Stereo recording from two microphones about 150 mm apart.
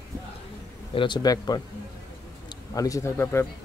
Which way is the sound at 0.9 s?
30° left (ahead or behind).